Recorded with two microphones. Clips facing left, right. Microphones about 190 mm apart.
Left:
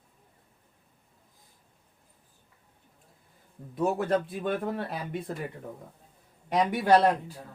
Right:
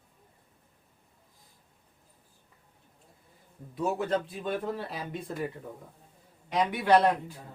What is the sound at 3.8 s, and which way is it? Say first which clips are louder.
Speech: left 3 dB; 55° left (ahead or behind).